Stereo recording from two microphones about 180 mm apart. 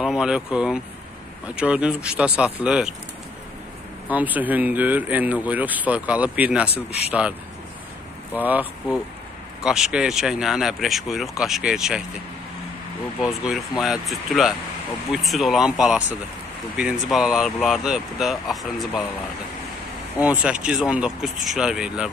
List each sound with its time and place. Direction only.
0.0 s speech: 5° right (ahead or behind)
4.1 s speech: 10° right (ahead or behind)
6.7 s a man's voice: 35° left (ahead or behind)
8.3 s speech: 10° right (ahead or behind)
13.2 s speech: centre (ahead or behind)
20.2 s speech: 10° right (ahead or behind)